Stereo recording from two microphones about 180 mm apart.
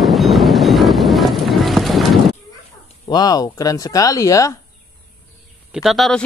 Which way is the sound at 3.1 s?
20° left (ahead or behind).